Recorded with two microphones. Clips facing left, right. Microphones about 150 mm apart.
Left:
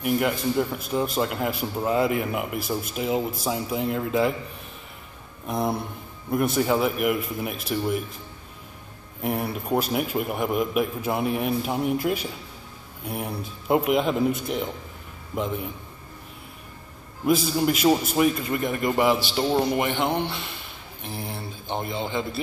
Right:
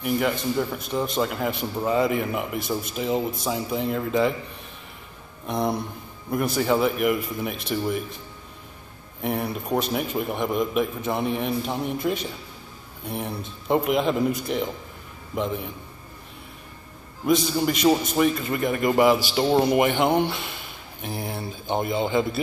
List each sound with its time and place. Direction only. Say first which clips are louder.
0.0 s a man's voice: even; 5° left (ahead or behind)
5.5 s a man's voice: right 1 dB; 5° left (ahead or behind)
9.2 s a man's voice: even; 5° left (ahead or behind)
17.3 s a man's voice: even; 5° left (ahead or behind)
21.9 s a man's voice: right 6 dB; 5° right (ahead or behind)